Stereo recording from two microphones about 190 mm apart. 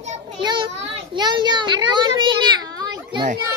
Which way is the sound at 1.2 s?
25° right (ahead or behind).